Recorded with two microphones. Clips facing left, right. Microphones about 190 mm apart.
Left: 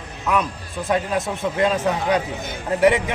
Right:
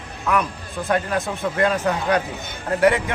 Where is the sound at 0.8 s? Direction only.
25° left (ahead or behind).